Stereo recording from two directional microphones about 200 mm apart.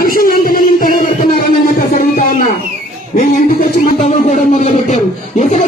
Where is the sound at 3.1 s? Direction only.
45° left (ahead or behind).